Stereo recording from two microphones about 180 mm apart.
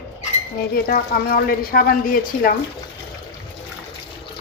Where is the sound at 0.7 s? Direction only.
55° left (ahead or behind).